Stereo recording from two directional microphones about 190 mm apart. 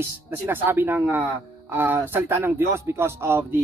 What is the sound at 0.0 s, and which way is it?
Speech, 10° right (ahead or behind).